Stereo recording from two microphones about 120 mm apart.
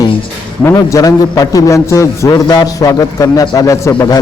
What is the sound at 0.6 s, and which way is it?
A man's voice, 25° left (ahead or behind).